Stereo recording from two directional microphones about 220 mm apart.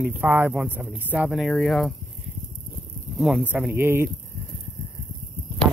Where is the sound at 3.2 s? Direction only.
Centre (ahead or behind).